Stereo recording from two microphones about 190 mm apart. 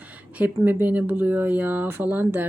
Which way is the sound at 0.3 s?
10° right (ahead or behind).